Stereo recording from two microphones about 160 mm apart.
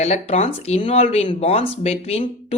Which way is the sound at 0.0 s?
40° left (ahead or behind).